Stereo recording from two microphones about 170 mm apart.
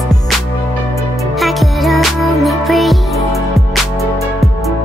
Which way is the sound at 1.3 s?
Centre (ahead or behind).